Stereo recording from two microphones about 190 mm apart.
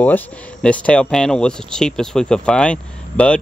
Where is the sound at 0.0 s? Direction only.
5° left (ahead or behind).